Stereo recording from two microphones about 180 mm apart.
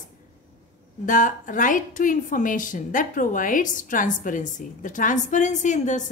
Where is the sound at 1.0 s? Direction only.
45° left (ahead or behind).